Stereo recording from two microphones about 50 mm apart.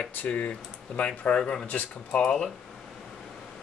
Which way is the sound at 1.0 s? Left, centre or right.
Left.